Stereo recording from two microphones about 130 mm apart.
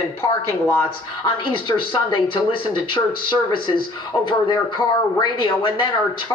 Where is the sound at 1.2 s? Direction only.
40° left (ahead or behind).